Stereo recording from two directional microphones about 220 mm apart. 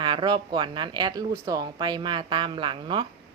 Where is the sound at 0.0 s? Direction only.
20° right (ahead or behind).